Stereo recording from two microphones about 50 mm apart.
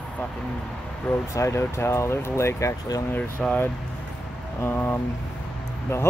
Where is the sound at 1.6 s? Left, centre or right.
Left.